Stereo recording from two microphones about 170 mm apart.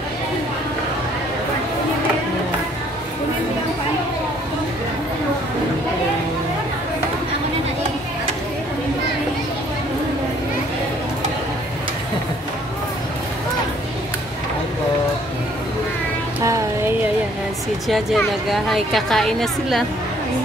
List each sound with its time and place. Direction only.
16.4 s music: 15° right (ahead or behind)
17.8 s a woman's voice: centre (ahead or behind)